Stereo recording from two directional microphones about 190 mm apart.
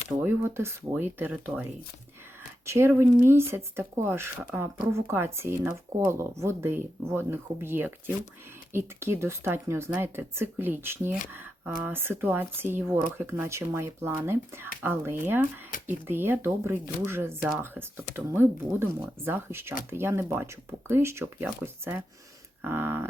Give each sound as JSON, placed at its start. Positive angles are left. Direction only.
{"t": 0.1, "sound": "speech", "side_deg": -10}
{"t": 2.6, "sound": "speech", "side_deg": -15}